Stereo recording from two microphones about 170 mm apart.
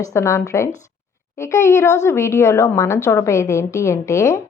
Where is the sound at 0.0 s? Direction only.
15° left (ahead or behind).